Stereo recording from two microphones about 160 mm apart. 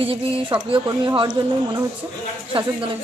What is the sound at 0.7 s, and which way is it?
Speech, 25° right (ahead or behind).